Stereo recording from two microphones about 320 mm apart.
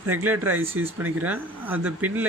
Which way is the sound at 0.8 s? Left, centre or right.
Right.